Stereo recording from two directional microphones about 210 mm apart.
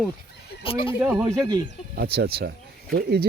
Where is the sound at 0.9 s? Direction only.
10° right (ahead or behind).